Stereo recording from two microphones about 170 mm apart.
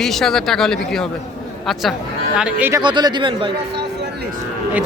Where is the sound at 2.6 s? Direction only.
10° right (ahead or behind).